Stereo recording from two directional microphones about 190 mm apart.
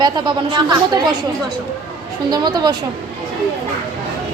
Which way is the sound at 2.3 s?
20° right (ahead or behind).